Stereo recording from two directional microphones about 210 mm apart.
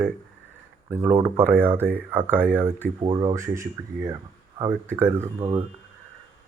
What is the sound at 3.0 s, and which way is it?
Speech, 25° right (ahead or behind).